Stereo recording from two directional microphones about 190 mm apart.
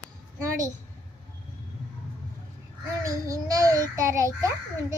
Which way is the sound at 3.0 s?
15° right (ahead or behind).